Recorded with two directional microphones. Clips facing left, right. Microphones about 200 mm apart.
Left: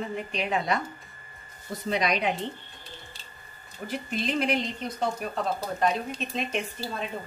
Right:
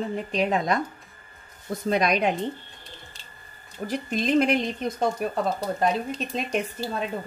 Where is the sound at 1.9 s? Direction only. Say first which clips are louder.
Right 4 dB; 50° right (ahead or behind).